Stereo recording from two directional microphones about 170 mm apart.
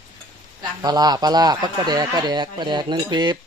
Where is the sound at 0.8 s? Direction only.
25° right (ahead or behind).